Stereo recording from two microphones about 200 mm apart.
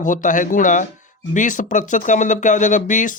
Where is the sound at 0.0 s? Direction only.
40° left (ahead or behind).